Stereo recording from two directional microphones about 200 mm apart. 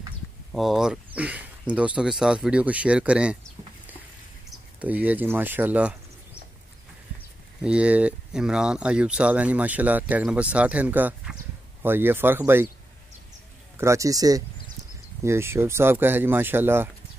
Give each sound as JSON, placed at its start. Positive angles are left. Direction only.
{"t": 0.5, "sound": "speech", "side_deg": 0}
{"t": 7.6, "sound": "speech", "side_deg": -5}
{"t": 13.7, "sound": "speech", "side_deg": -15}